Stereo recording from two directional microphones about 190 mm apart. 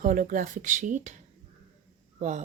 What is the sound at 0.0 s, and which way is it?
Speech, 45° right (ahead or behind).